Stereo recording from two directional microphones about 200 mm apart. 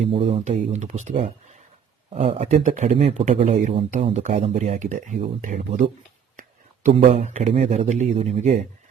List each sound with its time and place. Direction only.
0.0 s speech: 30° right (ahead or behind)
6.9 s speech: 35° right (ahead or behind)